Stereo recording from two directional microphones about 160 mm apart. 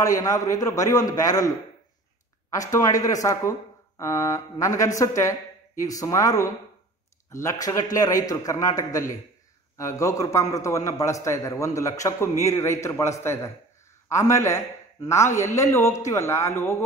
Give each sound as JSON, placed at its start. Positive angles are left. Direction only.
{"t": 0.0, "sound": "speech", "side_deg": 20}
{"t": 2.5, "sound": "speech", "side_deg": 20}